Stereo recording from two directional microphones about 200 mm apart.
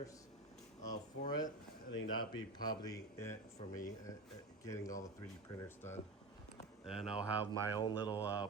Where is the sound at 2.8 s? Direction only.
15° left (ahead or behind).